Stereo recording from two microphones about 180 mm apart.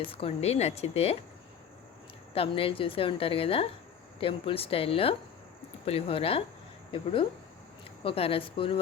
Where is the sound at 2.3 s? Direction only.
30° left (ahead or behind).